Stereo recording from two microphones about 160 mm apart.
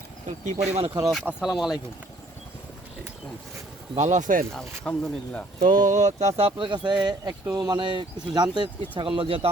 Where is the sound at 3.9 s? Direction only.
50° right (ahead or behind).